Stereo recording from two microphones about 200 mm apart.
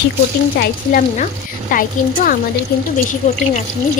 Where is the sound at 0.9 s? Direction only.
40° left (ahead or behind).